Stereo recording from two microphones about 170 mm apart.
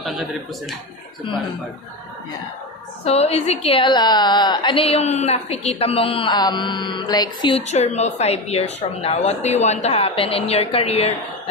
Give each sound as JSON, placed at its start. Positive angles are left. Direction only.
{"t": 0.0, "sound": "speech", "side_deg": 0}
{"t": 3.1, "sound": "a woman's voice", "side_deg": 35}
{"t": 7.5, "sound": "a woman's voice", "side_deg": 40}